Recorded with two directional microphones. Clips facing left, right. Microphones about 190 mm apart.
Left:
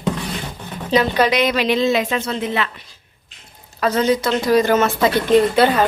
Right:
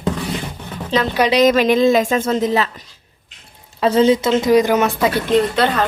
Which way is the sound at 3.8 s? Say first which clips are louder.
Right 4 dB; 25° right (ahead or behind).